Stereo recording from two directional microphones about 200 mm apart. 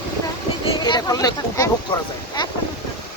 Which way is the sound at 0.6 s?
20° left (ahead or behind).